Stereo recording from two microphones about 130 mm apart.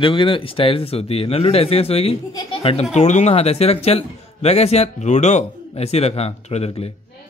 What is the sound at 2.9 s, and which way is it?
A man's voice, 65° left (ahead or behind).